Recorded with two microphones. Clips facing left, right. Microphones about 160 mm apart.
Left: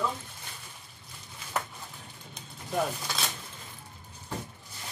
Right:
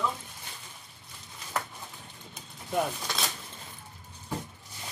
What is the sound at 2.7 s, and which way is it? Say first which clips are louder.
Speech: right 1 dB; centre (ahead or behind).